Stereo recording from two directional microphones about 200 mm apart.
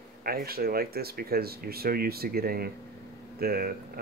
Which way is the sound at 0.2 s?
50° right (ahead or behind).